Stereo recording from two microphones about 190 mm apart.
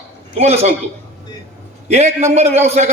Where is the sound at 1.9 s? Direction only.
35° right (ahead or behind).